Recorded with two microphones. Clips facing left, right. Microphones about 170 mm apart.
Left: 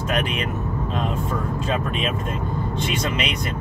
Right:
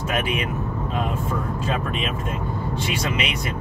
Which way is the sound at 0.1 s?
5° right (ahead or behind).